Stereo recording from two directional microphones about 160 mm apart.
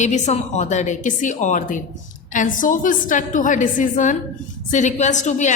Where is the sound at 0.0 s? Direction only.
50° left (ahead or behind).